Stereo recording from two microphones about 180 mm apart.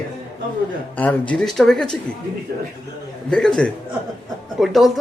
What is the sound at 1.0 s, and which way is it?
Speech, 10° left (ahead or behind).